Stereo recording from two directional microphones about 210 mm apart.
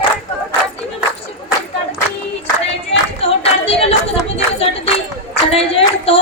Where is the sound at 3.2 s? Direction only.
30° left (ahead or behind).